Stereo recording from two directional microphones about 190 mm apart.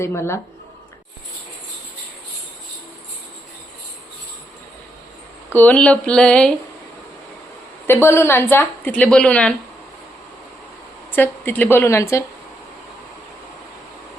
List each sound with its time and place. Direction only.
0.0 s a woman's voice: 15° left (ahead or behind)
5.5 s speech: 5° left (ahead or behind)
8.0 s a woman's voice: 15° left (ahead or behind)
11.1 s a woman's voice: 10° left (ahead or behind)